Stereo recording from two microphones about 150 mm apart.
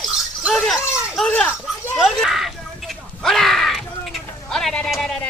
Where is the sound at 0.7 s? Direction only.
Centre (ahead or behind).